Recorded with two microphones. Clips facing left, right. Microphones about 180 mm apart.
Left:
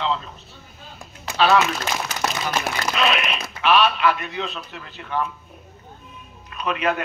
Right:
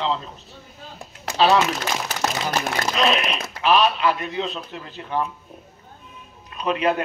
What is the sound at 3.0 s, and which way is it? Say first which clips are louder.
A man's voice: right 2 dB; 35° right (ahead or behind).